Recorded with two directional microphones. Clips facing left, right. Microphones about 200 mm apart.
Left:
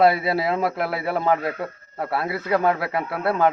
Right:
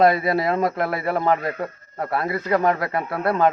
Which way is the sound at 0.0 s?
5° left (ahead or behind).